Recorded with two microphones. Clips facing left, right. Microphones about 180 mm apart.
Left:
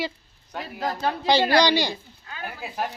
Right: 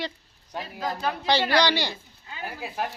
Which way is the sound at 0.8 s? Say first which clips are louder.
Left 3 dB; 30° left (ahead or behind).